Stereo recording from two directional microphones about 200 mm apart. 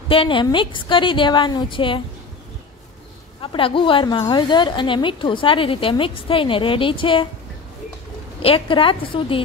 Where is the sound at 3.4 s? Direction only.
25° left (ahead or behind).